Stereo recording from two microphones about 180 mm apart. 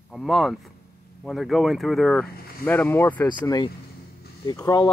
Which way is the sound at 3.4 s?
25° left (ahead or behind).